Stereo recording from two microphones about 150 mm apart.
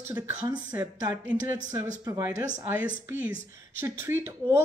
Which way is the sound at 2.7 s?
10° right (ahead or behind).